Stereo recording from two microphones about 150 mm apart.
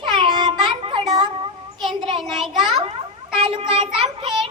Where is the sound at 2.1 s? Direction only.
Centre (ahead or behind).